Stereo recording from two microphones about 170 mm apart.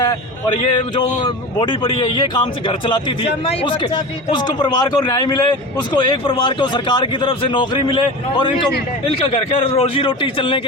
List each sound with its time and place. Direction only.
0.0 s a man's voice: 25° left (ahead or behind)